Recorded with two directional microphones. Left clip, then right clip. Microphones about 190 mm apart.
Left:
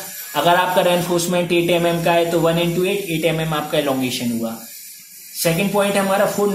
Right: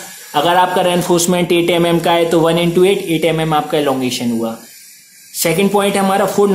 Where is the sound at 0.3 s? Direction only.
25° right (ahead or behind).